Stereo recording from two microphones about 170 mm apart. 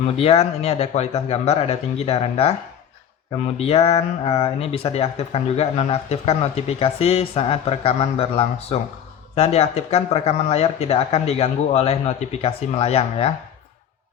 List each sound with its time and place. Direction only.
0.2 s speech: 35° left (ahead or behind)
3.6 s speech: 35° left (ahead or behind)